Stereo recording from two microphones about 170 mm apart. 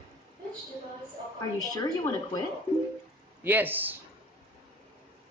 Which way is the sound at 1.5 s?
20° left (ahead or behind).